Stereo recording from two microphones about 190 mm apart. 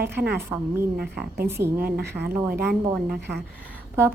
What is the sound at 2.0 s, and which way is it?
Speech, 60° right (ahead or behind).